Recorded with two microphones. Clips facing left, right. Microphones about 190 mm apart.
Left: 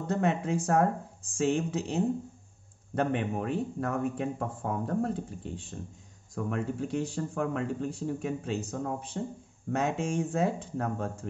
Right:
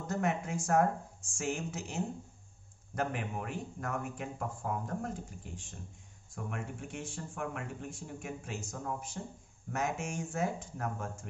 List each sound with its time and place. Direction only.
0.0 s a man's voice: 30° left (ahead or behind)